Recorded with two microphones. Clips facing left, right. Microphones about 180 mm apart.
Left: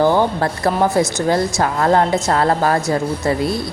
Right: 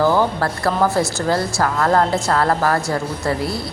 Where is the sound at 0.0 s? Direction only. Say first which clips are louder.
Left 2 dB; 20° left (ahead or behind).